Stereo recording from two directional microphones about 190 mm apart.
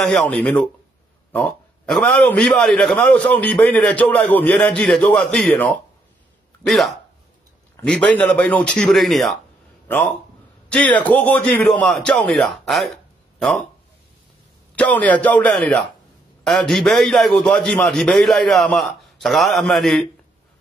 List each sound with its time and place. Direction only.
0.0 s a man's voice: centre (ahead or behind)
7.7 s a sound: 5° left (ahead or behind)
8.1 s a man's voice: 5° left (ahead or behind)
14.8 s a man's voice: 5° left (ahead or behind)